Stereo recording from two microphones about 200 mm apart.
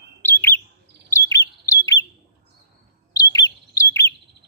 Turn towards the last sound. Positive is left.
turn(degrees=15)  # may be behind; listen again after turning